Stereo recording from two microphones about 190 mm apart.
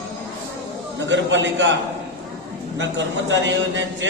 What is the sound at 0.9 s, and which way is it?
Speech, 70° right (ahead or behind).